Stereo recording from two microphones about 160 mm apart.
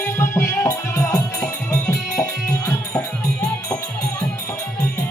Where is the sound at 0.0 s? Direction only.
15° left (ahead or behind).